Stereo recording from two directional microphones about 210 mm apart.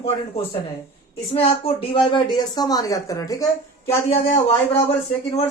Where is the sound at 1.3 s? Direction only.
25° left (ahead or behind).